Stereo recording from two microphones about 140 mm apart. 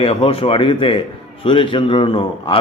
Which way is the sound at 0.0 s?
40° left (ahead or behind).